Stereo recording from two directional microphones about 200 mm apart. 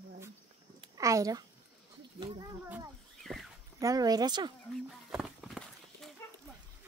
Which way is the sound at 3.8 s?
20° right (ahead or behind).